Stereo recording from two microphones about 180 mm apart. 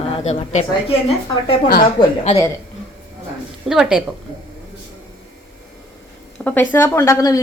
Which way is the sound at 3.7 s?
5° right (ahead or behind).